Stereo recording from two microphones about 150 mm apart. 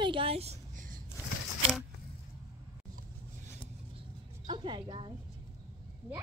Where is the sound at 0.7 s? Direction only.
65° right (ahead or behind).